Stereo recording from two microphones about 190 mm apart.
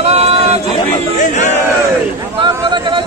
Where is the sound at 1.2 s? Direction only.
40° left (ahead or behind).